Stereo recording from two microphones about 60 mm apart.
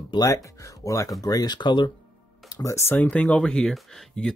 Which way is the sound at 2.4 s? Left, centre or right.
Left.